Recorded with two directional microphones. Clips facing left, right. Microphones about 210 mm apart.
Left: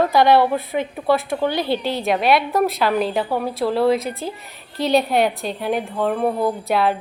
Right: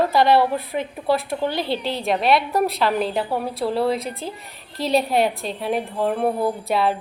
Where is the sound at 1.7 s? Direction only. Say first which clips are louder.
Left 2 dB; centre (ahead or behind).